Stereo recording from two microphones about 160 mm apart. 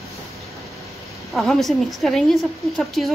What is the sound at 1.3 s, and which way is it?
A woman's voice, centre (ahead or behind).